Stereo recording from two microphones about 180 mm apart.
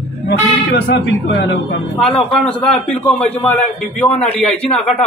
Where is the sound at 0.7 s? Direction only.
70° left (ahead or behind).